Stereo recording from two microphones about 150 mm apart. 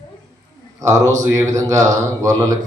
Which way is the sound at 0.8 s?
20° right (ahead or behind).